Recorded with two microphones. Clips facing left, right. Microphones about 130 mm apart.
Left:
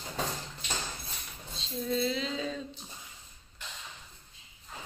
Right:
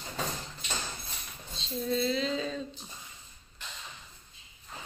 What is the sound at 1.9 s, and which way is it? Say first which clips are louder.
Speech: right 2 dB; 10° left (ahead or behind).